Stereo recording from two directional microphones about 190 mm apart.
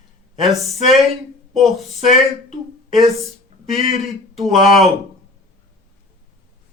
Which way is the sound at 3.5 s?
35° right (ahead or behind).